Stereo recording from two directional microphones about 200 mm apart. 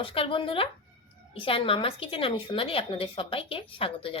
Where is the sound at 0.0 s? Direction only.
25° left (ahead or behind).